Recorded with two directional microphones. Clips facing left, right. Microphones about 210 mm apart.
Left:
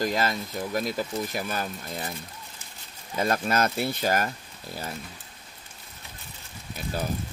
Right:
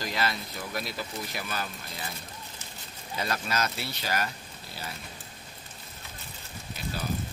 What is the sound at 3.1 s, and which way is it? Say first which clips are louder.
Speech: left 6 dB; 50° left (ahead or behind).